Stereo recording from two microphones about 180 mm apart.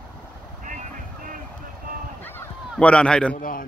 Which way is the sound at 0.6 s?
45° right (ahead or behind).